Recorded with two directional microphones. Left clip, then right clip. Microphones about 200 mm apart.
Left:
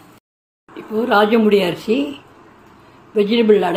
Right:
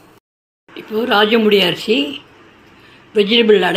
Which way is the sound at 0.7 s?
Centre (ahead or behind).